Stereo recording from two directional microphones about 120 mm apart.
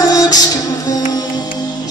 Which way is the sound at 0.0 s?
30° left (ahead or behind).